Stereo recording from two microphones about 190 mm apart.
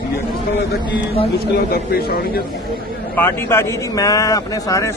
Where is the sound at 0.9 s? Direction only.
30° left (ahead or behind).